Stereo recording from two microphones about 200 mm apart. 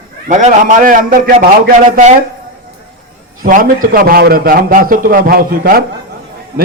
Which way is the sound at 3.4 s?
45° right (ahead or behind).